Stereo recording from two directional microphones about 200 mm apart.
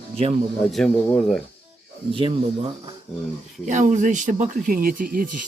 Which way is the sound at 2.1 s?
25° right (ahead or behind).